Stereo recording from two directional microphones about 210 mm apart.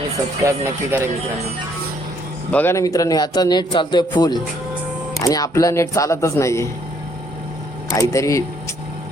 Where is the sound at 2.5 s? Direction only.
10° left (ahead or behind).